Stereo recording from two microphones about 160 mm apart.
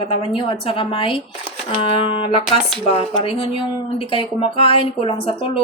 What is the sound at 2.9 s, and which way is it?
Speech, 35° left (ahead or behind).